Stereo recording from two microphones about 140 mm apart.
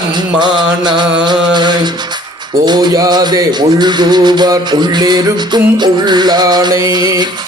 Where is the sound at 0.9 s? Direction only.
30° right (ahead or behind).